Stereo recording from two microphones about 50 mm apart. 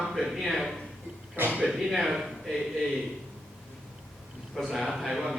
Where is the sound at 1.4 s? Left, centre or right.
Right.